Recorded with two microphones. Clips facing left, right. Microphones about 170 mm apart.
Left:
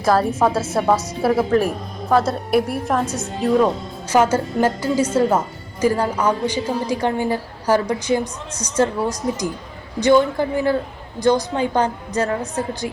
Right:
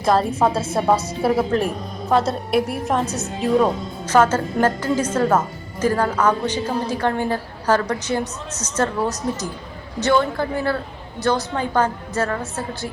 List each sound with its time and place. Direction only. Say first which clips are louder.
0.0 s a woman's voice: left 1 dB; centre (ahead or behind)
4.1 s a woman's voice: even; 10° left (ahead or behind)